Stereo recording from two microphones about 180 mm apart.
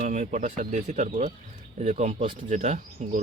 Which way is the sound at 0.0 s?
45° right (ahead or behind).